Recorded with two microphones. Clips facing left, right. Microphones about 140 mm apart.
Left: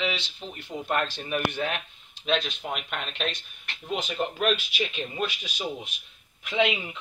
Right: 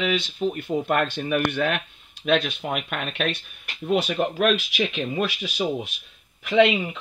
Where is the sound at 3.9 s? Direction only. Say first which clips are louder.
Right 7 dB; 70° right (ahead or behind).